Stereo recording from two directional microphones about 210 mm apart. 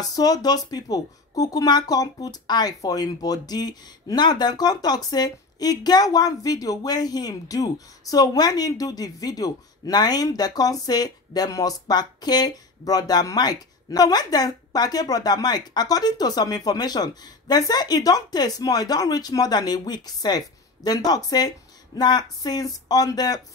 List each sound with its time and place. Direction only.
0.1 s speech: 20° left (ahead or behind)